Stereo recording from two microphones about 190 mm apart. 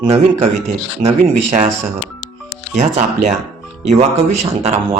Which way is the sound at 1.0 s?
35° right (ahead or behind).